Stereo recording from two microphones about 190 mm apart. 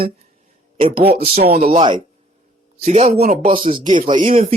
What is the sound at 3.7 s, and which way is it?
Speech, 25° right (ahead or behind).